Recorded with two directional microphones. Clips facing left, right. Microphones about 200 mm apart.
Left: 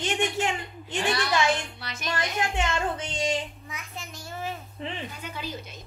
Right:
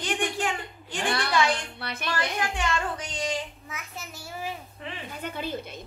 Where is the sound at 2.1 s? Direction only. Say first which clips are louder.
Left 1 dB; 25° left (ahead or behind).